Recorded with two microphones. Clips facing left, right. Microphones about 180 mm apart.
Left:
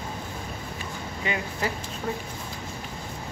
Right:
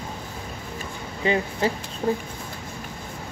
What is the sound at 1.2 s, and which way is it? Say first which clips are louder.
Speech: right 7 dB; 30° right (ahead or behind).